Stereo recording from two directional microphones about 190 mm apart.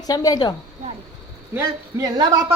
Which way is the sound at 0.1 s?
20° left (ahead or behind).